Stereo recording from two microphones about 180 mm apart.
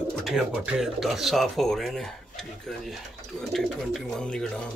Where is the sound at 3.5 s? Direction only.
Centre (ahead or behind).